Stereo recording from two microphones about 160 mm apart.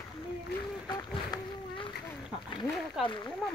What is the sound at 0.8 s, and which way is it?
Speech, 25° left (ahead or behind).